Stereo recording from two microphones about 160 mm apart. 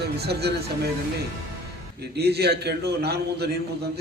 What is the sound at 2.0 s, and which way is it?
A man's voice, 90° right.